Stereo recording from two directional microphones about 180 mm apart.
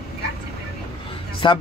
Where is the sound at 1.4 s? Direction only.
25° left (ahead or behind).